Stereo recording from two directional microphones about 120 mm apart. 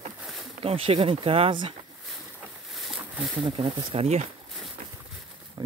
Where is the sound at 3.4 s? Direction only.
45° right (ahead or behind); by 4.3 s 65° right (ahead or behind).